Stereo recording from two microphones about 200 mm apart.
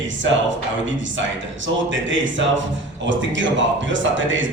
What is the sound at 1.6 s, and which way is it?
A man's voice, 70° right (ahead or behind).